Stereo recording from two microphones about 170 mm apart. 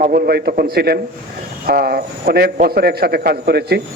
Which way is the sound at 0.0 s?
60° right (ahead or behind).